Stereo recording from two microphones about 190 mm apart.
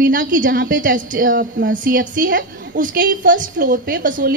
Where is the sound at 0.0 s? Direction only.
45° right (ahead or behind).